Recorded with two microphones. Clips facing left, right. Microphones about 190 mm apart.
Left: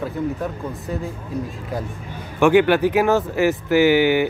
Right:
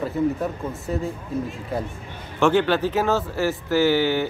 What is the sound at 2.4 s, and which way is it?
Speech, 15° left (ahead or behind).